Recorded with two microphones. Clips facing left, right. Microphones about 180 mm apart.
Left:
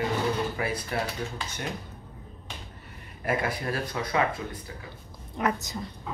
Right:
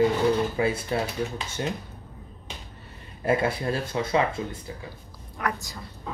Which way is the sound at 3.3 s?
25° right (ahead or behind).